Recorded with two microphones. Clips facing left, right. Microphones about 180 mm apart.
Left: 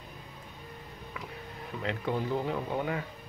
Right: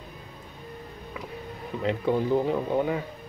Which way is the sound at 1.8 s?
30° right (ahead or behind).